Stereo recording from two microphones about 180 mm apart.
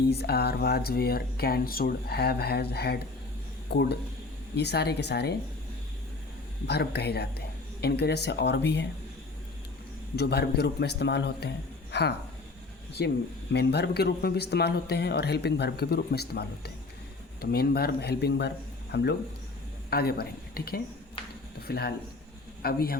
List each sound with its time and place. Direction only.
0.1 s a man's voice: 65° left (ahead or behind)
6.7 s speech: 65° left (ahead or behind)
10.2 s a man's voice: 65° left (ahead or behind)